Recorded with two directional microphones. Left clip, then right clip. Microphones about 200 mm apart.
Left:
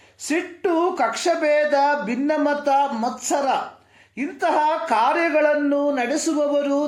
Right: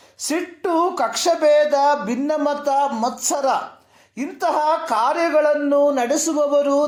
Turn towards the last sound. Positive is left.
turn(degrees=-30)  # may be behind; listen again after turning